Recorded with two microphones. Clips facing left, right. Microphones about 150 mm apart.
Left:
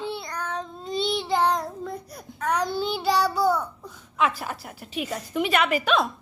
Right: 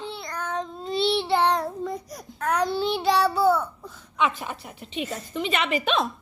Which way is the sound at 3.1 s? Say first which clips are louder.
Right 1 dB; 5° right (ahead or behind).